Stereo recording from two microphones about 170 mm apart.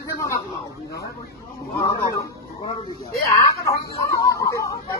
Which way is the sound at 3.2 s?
20° left (ahead or behind).